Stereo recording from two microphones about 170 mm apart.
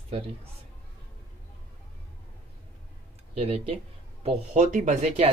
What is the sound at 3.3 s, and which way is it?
Speech, 35° right (ahead or behind).